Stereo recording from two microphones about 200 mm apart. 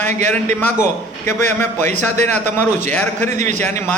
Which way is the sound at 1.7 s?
40° right (ahead or behind).